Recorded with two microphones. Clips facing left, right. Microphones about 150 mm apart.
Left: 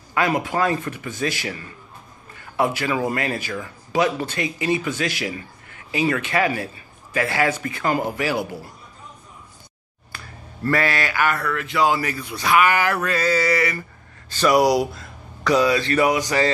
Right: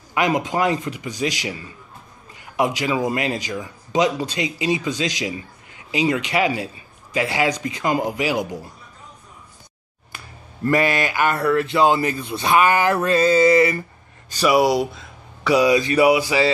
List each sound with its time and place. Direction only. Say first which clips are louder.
0.1 s speech: right 1 dB; 15° right (ahead or behind)
10.1 s a sound: left 1 dB; 15° right (ahead or behind)
14.3 s speech: even; 5° right (ahead or behind)
15.5 s speech: right 2 dB; 15° right (ahead or behind)